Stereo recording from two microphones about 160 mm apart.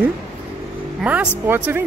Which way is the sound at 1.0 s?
10° right (ahead or behind).